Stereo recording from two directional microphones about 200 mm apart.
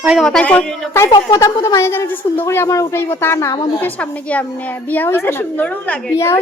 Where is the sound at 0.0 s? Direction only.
Centre (ahead or behind).